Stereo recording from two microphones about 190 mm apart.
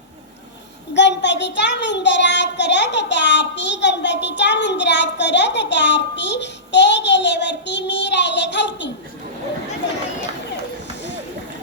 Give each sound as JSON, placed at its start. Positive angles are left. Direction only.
{"t": 0.9, "sound": "a child's voice", "side_deg": 65}